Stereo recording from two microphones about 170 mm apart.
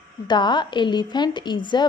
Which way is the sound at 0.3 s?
25° left (ahead or behind).